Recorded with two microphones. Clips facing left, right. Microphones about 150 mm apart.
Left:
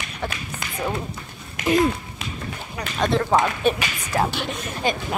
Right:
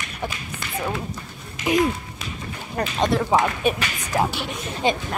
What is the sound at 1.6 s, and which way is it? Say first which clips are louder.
Speech: left 2 dB; 60° left (ahead or behind).